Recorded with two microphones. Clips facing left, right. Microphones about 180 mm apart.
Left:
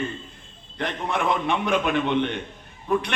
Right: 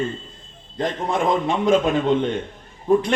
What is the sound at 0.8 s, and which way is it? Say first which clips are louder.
Speech: right 4 dB; 65° left (ahead or behind).